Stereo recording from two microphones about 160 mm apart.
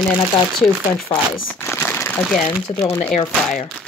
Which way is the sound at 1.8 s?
15° left (ahead or behind).